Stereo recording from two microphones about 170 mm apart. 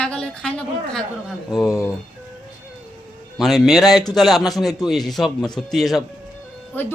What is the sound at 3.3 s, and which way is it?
A man's voice, centre (ahead or behind).